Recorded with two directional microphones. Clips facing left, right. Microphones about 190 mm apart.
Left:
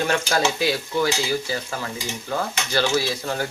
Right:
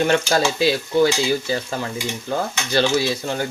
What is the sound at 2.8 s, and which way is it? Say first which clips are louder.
Speech: right 3 dB; 25° right (ahead or behind).